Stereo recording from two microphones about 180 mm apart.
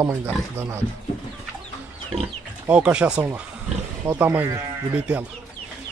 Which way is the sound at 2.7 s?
5° right (ahead or behind).